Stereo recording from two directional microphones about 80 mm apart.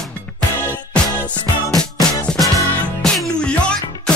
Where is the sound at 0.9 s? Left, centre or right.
Centre.